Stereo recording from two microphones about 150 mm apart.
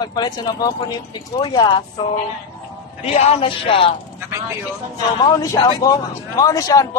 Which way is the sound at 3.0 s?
45° left (ahead or behind).